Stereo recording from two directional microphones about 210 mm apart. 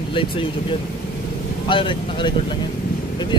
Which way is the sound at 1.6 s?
25° left (ahead or behind).